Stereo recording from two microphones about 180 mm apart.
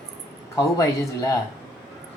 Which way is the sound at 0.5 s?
20° left (ahead or behind).